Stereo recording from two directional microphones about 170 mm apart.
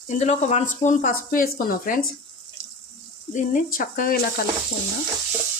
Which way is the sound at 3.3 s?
55° left (ahead or behind).